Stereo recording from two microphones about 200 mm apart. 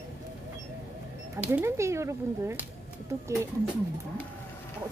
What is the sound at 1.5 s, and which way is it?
Speech, 15° right (ahead or behind).